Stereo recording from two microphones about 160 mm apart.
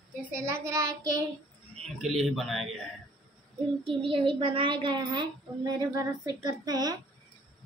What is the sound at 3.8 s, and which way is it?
A woman's voice, 35° right (ahead or behind).